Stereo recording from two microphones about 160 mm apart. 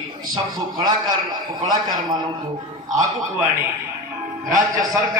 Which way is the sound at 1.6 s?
25° right (ahead or behind).